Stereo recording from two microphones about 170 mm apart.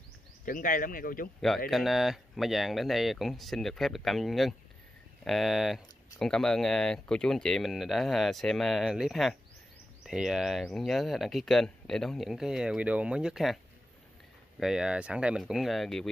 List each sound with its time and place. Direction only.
0.5 s speech: 55° left (ahead or behind)
1.7 s speech: centre (ahead or behind)
14.6 s speech: 5° right (ahead or behind)